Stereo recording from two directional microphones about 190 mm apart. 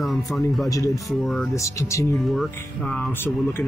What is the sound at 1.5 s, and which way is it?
Speech, 15° left (ahead or behind).